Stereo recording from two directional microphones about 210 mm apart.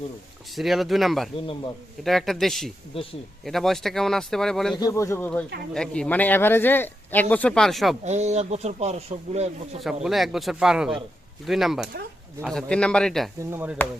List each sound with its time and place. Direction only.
0.5 s speech: centre (ahead or behind)
4.8 s speech: 15° left (ahead or behind)
8.0 s speech: 30° right (ahead or behind)
9.8 s speech: centre (ahead or behind)
13.5 s speech: 10° right (ahead or behind)